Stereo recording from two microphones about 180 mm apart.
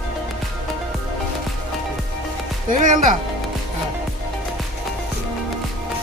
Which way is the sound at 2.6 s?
45° right (ahead or behind).